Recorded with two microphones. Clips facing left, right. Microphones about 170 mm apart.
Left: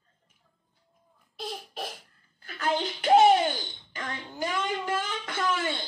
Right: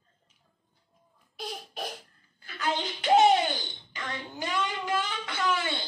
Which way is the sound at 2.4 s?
50° left (ahead or behind).